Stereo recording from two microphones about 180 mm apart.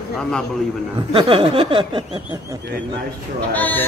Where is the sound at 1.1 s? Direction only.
30° right (ahead or behind).